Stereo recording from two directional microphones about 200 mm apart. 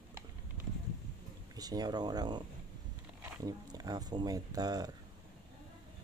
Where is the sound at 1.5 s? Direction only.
20° right (ahead or behind).